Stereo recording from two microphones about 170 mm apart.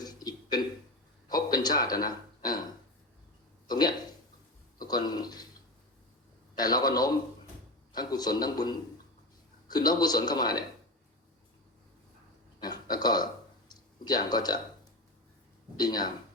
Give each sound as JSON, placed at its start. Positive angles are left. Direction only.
{"t": 0.0, "sound": "a sound", "side_deg": 25}
{"t": 3.7, "sound": "speech", "side_deg": 25}
{"t": 6.6, "sound": "speech", "side_deg": 25}
{"t": 12.5, "sound": "burping", "side_deg": 25}
{"t": 13.7, "sound": "a sound", "side_deg": 25}
{"t": 15.8, "sound": "speech", "side_deg": 25}